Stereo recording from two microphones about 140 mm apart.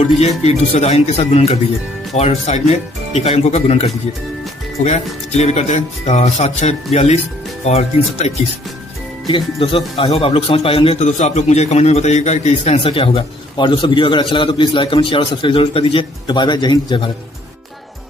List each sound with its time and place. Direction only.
0.4 s speech: 50° left (ahead or behind)
9.3 s a man's voice: 40° left (ahead or behind)
11.0 s a man's voice: 55° left (ahead or behind); by 17.1 s 35° left (ahead or behind)